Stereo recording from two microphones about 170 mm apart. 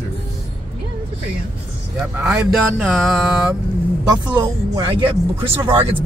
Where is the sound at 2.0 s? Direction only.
5° right (ahead or behind).